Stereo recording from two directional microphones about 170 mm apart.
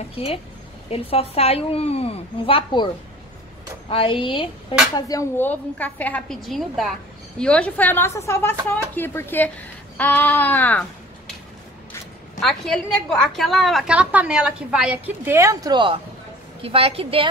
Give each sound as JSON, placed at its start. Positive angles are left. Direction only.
{"t": 0.1, "sound": "a woman's voice", "side_deg": 35}
{"t": 3.9, "sound": "a woman's voice", "side_deg": 30}
{"t": 12.4, "sound": "a woman's voice", "side_deg": 0}